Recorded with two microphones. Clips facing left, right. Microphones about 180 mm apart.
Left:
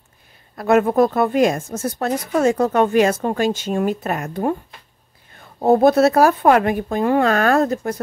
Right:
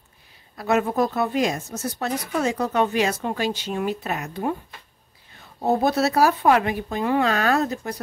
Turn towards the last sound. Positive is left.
turn(degrees=50)  # may be behind; listen again after turning